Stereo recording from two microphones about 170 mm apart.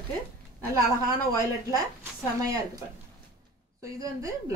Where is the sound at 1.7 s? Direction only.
20° right (ahead or behind).